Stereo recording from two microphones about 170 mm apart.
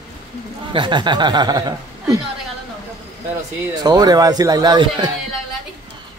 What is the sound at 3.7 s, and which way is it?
Speech, 25° right (ahead or behind).